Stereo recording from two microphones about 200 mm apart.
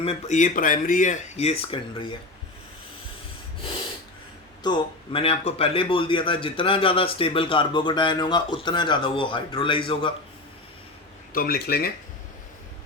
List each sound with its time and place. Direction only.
0.0 s speech: 35° left (ahead or behind)
4.6 s a man's voice: 25° left (ahead or behind)
11.3 s speech: 50° left (ahead or behind)